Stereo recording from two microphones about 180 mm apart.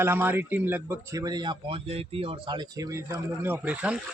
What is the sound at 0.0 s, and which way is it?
A man's voice, 10° right (ahead or behind).